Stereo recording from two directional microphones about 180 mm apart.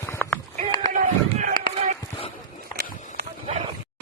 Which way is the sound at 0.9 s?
45° right (ahead or behind).